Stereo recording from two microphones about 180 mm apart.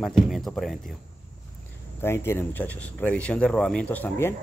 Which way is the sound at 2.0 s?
15° left (ahead or behind).